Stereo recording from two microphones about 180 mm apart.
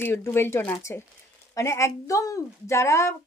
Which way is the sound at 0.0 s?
10° left (ahead or behind).